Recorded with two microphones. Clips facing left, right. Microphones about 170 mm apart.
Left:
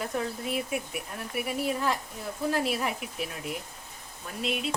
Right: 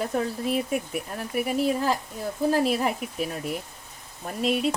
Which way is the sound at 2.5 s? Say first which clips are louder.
Right 5 dB; 35° right (ahead or behind).